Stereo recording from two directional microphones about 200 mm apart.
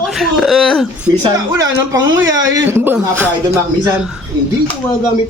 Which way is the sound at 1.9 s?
15° right (ahead or behind).